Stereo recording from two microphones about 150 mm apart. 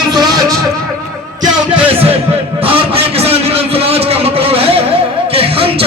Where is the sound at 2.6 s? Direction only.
40° right (ahead or behind).